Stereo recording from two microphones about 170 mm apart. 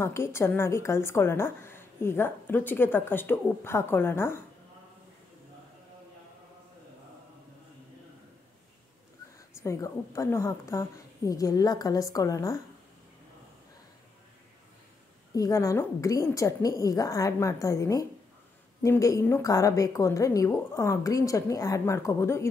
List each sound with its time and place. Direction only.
0.0 s a woman's voice: 15° left (ahead or behind)
9.6 s a woman's voice: 15° left (ahead or behind)
15.3 s a woman's voice: 20° left (ahead or behind)